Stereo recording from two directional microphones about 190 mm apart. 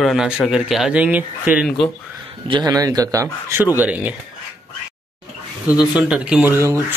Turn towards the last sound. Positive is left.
turn(degrees=-15)  # may be behind; listen again after turning